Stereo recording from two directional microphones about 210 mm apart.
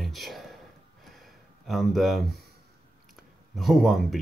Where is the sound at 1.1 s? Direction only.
Centre (ahead or behind).